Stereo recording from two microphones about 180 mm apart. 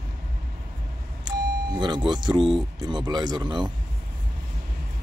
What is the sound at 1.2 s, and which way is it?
Speech, 25° right (ahead or behind).